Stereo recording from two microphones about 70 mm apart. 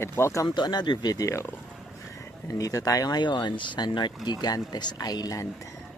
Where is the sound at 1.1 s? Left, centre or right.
Left.